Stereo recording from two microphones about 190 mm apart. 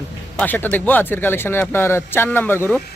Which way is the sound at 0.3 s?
10° left (ahead or behind).